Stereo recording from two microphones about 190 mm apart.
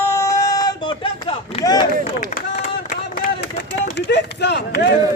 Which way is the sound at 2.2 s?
45° left (ahead or behind).